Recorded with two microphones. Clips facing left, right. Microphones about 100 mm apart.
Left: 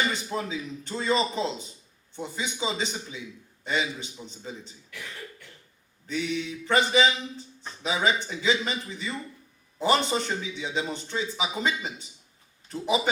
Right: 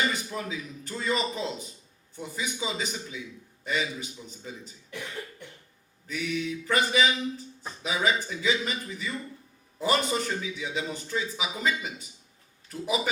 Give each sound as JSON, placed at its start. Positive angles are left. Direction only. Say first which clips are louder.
{"t": 0.3, "sound": "a man's voice", "louder": "left 3 dB", "side_deg": 25}
{"t": 4.9, "sound": "cough", "louder": "right 4 dB", "side_deg": -20}
{"t": 6.1, "sound": "a man's voice", "louder": "left 1 dB", "side_deg": 25}